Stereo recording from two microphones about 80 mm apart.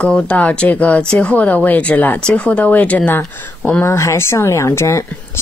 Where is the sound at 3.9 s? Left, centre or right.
Left.